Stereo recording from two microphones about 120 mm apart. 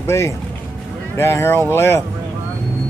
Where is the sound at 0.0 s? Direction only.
25° left (ahead or behind).